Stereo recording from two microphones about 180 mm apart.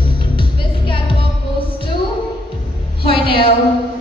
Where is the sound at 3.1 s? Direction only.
30° left (ahead or behind).